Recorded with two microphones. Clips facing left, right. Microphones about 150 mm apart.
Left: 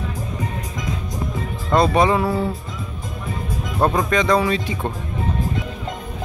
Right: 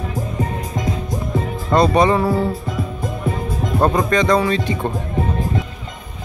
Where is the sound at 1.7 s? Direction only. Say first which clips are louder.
Right 2 dB; 5° left (ahead or behind).